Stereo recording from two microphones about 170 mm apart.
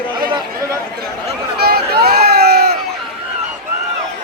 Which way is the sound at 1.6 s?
65° right (ahead or behind).